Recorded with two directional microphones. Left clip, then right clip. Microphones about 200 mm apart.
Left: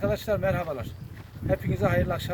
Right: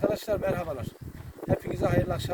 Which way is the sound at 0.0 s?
10° right (ahead or behind).